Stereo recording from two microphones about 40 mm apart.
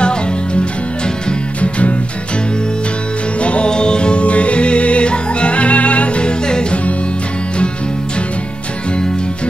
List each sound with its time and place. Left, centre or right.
0.0 s music: left
1.6 s music: left
3.3 s music: left